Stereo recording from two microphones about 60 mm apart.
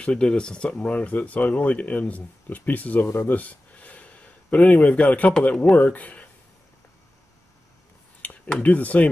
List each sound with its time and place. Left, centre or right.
0.0 s speech: centre
3.3 s a sound: left
5.4 s speech: left
8.5 s speech: left